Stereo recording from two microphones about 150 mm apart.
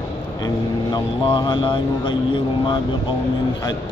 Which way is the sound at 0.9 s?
30° left (ahead or behind).